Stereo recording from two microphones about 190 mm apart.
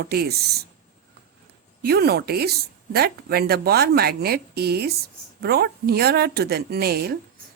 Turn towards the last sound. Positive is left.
turn(degrees=-55)  # may be behind; listen again after turning